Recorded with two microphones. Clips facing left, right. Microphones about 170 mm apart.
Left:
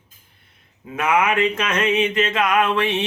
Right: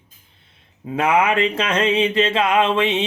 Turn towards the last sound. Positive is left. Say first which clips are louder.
# right 2 dB
turn(degrees=-20)  # may be behind; listen again after turning